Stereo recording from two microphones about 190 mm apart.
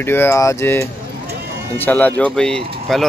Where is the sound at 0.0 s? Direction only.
10° left (ahead or behind).